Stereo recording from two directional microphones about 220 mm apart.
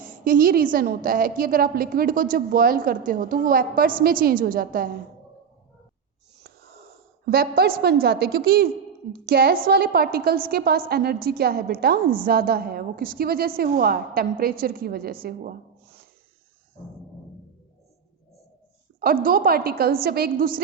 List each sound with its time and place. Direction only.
0.3 s a woman's voice: 40° right (ahead or behind)
7.3 s a woman's voice: 45° right (ahead or behind)
18.9 s a woman's voice: 40° right (ahead or behind)